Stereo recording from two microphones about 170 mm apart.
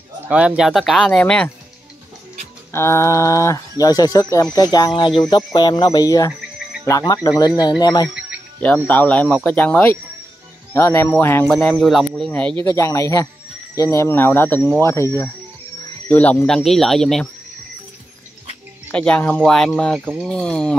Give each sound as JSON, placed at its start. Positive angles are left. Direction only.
{"t": 0.2, "sound": "speech", "side_deg": -5}
{"t": 2.7, "sound": "speech", "side_deg": 15}
{"t": 8.8, "sound": "speech", "side_deg": 10}
{"t": 12.6, "sound": "speech", "side_deg": 20}
{"t": 16.1, "sound": "speech", "side_deg": 10}
{"t": 18.9, "sound": "speech", "side_deg": 5}